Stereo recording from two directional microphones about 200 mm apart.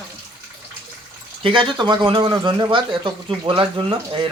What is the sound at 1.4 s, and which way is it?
Speech, 25° right (ahead or behind).